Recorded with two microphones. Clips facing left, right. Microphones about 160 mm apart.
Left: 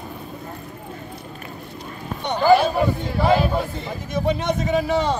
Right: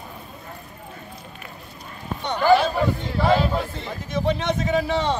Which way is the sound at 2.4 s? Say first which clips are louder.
Left 2 dB; 10° left (ahead or behind).